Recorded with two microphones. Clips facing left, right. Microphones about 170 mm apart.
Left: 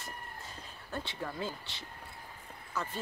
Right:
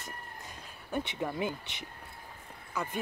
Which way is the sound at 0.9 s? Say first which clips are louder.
Right 5 dB; 20° right (ahead or behind).